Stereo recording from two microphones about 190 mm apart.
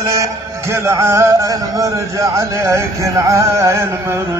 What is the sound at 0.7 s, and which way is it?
Speech, 15° right (ahead or behind).